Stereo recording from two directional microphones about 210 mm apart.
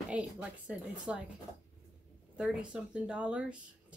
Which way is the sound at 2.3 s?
5° right (ahead or behind).